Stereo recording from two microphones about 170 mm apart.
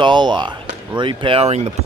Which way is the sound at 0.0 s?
25° right (ahead or behind).